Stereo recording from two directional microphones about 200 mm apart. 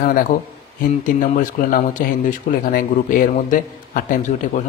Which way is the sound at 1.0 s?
40° left (ahead or behind).